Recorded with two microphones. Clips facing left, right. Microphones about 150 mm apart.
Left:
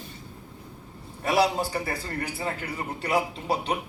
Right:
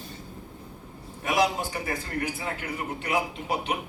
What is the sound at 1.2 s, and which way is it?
A man's voice, 35° left (ahead or behind).